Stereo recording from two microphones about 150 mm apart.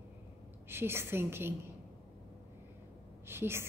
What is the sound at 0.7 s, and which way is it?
Speech, 15° right (ahead or behind).